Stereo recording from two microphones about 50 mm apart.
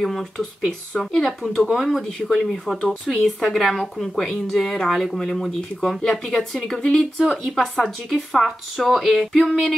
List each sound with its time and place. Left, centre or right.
0.0 s speech: centre
1.4 s speech: centre